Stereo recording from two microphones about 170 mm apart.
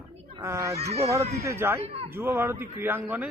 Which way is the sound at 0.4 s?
15° right (ahead or behind).